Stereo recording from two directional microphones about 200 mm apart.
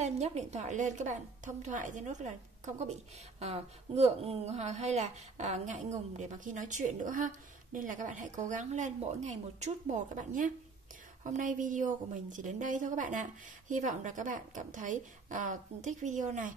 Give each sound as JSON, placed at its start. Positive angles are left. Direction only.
{"t": 0.0, "sound": "a woman's voice", "side_deg": -35}